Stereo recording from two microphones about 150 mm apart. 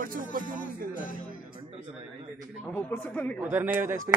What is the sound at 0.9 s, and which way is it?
Music, 65° left (ahead or behind).